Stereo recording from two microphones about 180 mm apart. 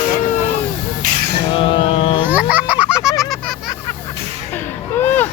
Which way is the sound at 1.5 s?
30° left (ahead or behind).